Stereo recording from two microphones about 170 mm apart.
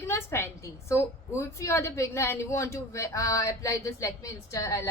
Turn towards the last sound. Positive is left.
turn(degrees=15)  # may be behind; listen again after turning